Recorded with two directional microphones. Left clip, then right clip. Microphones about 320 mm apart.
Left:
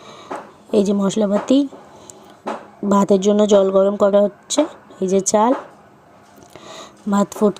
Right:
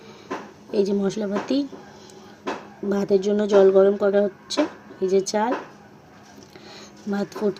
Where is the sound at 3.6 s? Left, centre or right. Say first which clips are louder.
Even; left.